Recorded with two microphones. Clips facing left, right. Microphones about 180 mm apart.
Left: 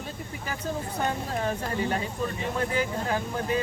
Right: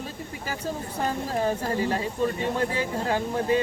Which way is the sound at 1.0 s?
30° right (ahead or behind).